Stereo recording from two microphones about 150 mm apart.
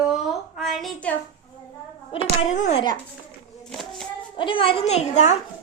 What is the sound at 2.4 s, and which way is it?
Speech, 50° left (ahead or behind).